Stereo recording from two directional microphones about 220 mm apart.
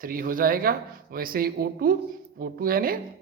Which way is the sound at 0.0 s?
40° right (ahead or behind).